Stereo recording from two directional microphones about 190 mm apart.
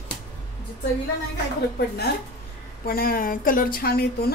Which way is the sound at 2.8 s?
50° left (ahead or behind).